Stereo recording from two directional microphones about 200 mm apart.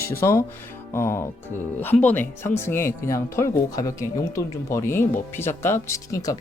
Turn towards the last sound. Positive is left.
turn(degrees=15)  # may be behind; listen again after turning